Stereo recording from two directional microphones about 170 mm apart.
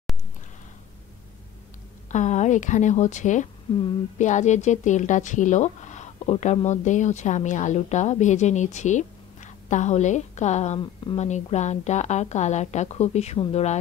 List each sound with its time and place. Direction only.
2.0 s a woman's voice: 45° left (ahead or behind)